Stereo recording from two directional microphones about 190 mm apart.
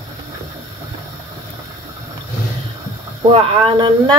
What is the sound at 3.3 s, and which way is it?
Speech, 25° right (ahead or behind).